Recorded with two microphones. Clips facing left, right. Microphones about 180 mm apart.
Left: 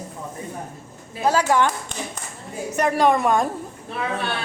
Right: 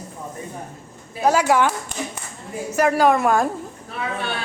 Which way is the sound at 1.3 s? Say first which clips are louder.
Right 1 dB; 10° right (ahead or behind).